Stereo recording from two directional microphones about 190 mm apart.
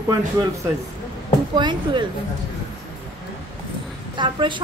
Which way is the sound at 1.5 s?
25° right (ahead or behind).